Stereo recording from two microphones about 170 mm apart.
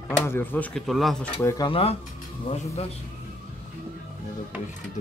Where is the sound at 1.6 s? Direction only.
35° left (ahead or behind).